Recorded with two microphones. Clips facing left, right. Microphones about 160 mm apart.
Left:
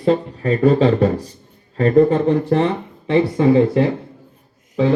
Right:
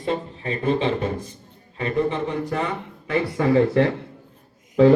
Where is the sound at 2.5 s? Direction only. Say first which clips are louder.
Left 9 dB; 30° left (ahead or behind); by 3.9 s 15° left (ahead or behind).